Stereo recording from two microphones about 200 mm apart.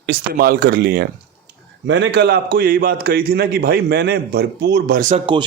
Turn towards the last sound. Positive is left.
turn(degrees=-25)  # may be behind; listen again after turning